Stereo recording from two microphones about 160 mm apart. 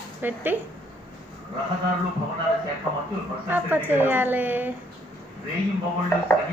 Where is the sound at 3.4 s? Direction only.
10° right (ahead or behind).